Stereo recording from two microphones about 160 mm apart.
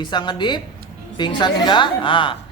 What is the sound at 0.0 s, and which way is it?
A woman's voice, 25° left (ahead or behind).